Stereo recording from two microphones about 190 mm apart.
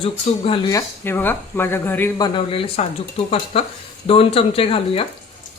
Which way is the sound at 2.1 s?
25° left (ahead or behind).